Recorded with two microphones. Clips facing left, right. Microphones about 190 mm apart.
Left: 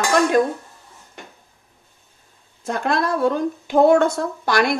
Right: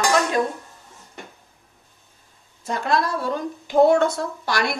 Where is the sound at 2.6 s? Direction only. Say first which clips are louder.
Left 1 dB; 55° left (ahead or behind).